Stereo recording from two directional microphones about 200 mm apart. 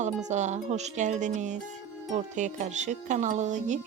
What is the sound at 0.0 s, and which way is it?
Speech, 35° right (ahead or behind).